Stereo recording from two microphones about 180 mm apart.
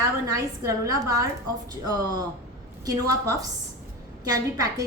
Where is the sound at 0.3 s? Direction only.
20° right (ahead or behind).